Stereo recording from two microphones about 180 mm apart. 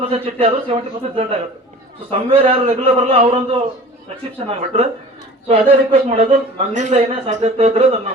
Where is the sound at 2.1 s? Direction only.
30° right (ahead or behind).